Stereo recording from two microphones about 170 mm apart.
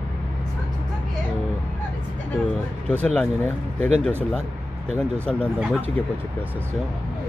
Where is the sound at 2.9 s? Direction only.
5° left (ahead or behind).